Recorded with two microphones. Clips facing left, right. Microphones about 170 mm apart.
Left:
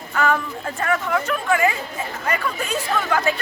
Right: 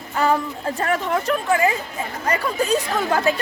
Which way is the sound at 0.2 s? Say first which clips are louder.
Right 1 dB; 35° right (ahead or behind).